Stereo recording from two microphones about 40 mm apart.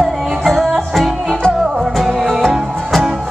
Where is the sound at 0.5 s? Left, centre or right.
Centre.